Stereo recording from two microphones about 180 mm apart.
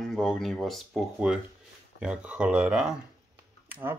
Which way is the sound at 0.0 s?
Centre (ahead or behind).